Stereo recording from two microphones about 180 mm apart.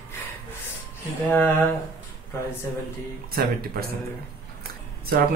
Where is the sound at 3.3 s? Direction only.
55° right (ahead or behind).